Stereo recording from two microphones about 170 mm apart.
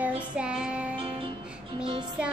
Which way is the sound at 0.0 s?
5° right (ahead or behind).